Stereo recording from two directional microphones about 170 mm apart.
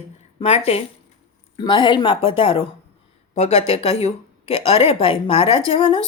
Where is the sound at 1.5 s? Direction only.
25° left (ahead or behind).